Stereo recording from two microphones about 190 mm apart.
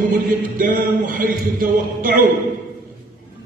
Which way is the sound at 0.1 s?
45° right (ahead or behind).